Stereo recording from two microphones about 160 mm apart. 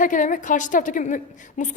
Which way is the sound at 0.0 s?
55° left (ahead or behind).